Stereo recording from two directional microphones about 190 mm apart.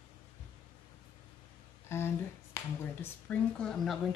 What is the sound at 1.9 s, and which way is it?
Speech, 15° left (ahead or behind).